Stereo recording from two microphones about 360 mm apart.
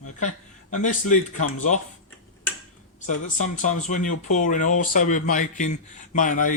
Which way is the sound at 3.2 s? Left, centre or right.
Left.